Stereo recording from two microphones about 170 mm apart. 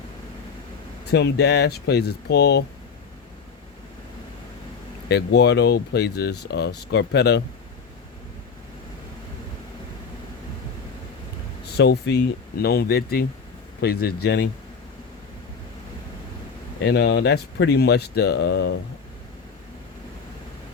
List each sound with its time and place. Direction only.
1.0 s speech: 80° left
5.0 s speech: 75° left (ahead or behind)
11.8 s speech: 85° left
12.6 s speech: 70° left (ahead or behind)
16.8 s speech: 75° left (ahead or behind)